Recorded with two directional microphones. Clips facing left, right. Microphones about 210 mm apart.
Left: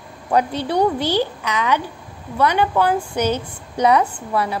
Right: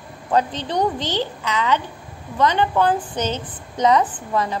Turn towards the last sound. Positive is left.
turn(degrees=10)  # may be behind; listen again after turning